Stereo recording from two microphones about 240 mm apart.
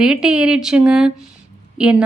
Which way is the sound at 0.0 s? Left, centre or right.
Centre.